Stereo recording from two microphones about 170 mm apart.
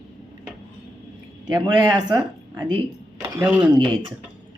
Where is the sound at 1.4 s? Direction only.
25° right (ahead or behind).